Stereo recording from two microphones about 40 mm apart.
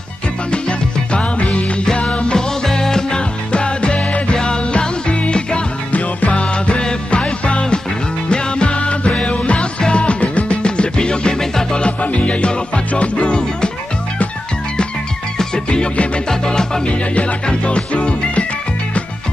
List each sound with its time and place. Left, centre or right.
0.5 s music: left
5.9 s music: left
6.4 s music: left
12.0 s music: left
15.3 s music: left